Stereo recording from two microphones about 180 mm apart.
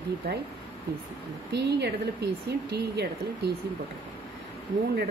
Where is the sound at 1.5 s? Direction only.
70° right (ahead or behind).